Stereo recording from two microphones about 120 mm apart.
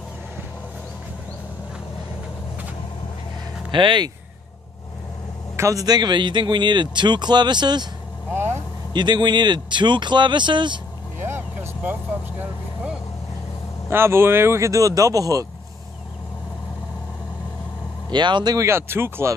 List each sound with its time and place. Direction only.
3.7 s a man's voice: 40° right (ahead or behind)
5.6 s a man's voice: 25° right (ahead or behind)
8.3 s vehicle: 20° right (ahead or behind)
8.9 s a man's voice: 40° right (ahead or behind)
11.2 s vehicle: 20° right (ahead or behind)
13.8 s speech: 20° right (ahead or behind)
18.1 s a man's voice: 40° right (ahead or behind)
18.7 s speech: 20° right (ahead or behind)